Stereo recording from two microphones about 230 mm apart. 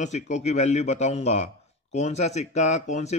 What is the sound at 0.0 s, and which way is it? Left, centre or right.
Speech, left.